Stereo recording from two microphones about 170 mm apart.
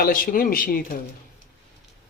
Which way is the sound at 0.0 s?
55° left (ahead or behind).